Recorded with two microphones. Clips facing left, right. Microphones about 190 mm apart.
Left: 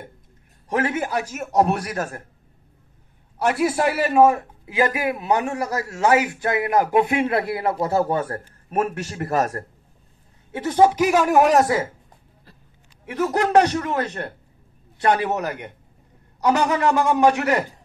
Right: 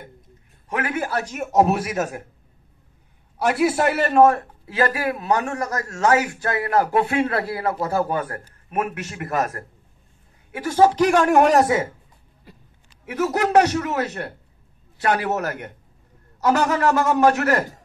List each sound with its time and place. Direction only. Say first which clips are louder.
0.7 s a man's voice: left 4 dB; 35° left (ahead or behind)
0.9 s a man's voice: even; 20° left (ahead or behind)
1.2 s speech: right 3 dB; centre (ahead or behind)
3.4 s a man's voice: right 1 dB; 5° right (ahead or behind)
3.7 s a man's voice: right 1 dB; 5° left (ahead or behind); by 9.7 s 30° left (ahead or behind)
10.5 s speech: even; 20° left (ahead or behind); by 11.8 s centre (ahead or behind)
13.0 s a man's voice: even; 10° right (ahead or behind)
15.2 s a man's voice: even; 15° left (ahead or behind)